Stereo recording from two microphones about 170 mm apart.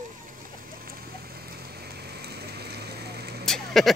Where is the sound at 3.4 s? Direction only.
Centre (ahead or behind).